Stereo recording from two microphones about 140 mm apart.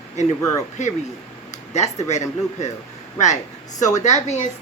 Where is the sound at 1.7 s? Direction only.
55° left (ahead or behind).